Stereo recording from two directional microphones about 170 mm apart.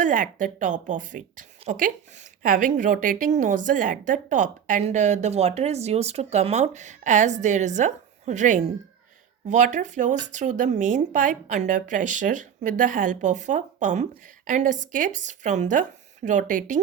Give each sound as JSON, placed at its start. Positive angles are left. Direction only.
{"t": 0.0, "sound": "a woman's voice", "side_deg": -50}